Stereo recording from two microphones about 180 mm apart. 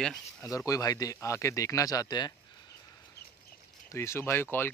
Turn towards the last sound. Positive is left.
turn(degrees=10)  # may be behind; listen again after turning